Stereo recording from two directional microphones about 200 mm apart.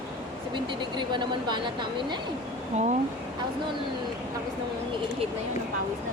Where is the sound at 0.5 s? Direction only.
25° right (ahead or behind).